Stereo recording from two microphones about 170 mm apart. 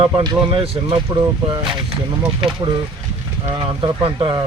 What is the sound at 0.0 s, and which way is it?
Speech, 25° right (ahead or behind).